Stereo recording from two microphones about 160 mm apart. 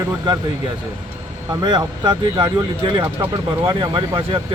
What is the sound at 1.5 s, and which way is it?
Speech, 25° right (ahead or behind).